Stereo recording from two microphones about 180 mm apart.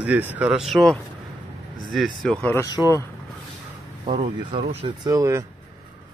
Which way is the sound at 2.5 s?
20° left (ahead or behind).